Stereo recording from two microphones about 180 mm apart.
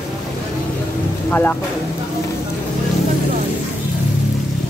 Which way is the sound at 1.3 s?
10° left (ahead or behind).